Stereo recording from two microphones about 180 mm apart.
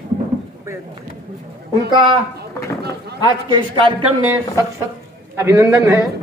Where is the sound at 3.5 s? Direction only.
25° right (ahead or behind).